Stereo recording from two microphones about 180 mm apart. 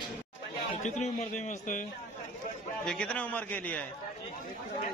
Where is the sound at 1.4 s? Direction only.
45° left (ahead or behind).